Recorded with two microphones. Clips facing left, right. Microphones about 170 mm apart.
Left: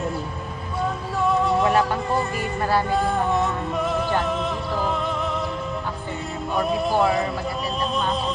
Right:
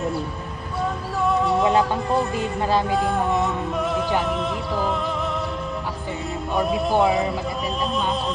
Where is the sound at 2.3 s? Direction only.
15° right (ahead or behind).